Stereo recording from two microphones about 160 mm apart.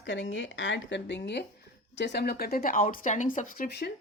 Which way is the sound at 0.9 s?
90° left.